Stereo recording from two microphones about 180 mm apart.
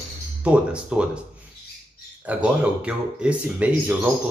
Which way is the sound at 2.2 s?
5° right (ahead or behind).